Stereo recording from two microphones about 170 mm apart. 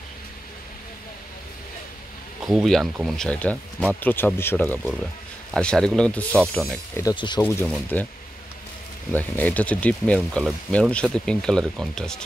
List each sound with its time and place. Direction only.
2.4 s speech: centre (ahead or behind); by 7.4 s 25° left (ahead or behind)
7.4 s speech: 10° left (ahead or behind)
9.1 s speech: 10° left (ahead or behind)